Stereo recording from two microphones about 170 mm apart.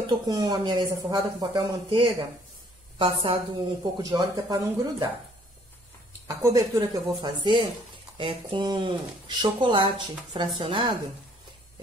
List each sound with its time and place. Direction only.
0.0 s speech: 25° right (ahead or behind)
6.2 s speech: 20° right (ahead or behind)
7.2 s a woman's voice: 30° right (ahead or behind)